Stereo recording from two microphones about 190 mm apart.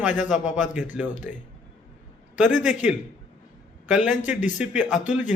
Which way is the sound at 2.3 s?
40° left (ahead or behind).